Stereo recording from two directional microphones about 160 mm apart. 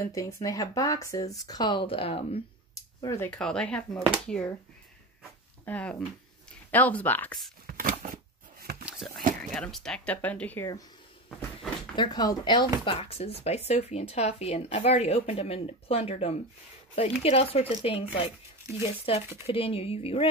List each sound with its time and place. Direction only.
0.0 s speech: 20° left (ahead or behind); by 2.4 s 35° left (ahead or behind)
2.7 s a sound: 20° left (ahead or behind)
3.3 s speech: 5° left (ahead or behind)
5.7 s speech: 5° left (ahead or behind)
7.6 s a sound: 70° right (ahead or behind)
8.8 s a sound: centre (ahead or behind)
9.4 s speech: 5° left (ahead or behind)
11.2 s a sound: 5° left (ahead or behind)
11.9 s speech: 25° left (ahead or behind)
12.8 s speech: 35° left (ahead or behind)
18.6 s speech: 25° right (ahead or behind)
19.0 s speech: 40° left (ahead or behind)